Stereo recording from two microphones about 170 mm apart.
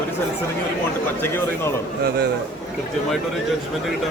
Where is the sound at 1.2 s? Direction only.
10° left (ahead or behind).